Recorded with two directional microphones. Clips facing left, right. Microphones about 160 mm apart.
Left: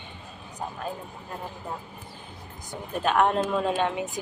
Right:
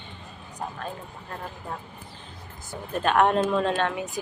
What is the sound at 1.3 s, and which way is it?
Speech, 10° left (ahead or behind).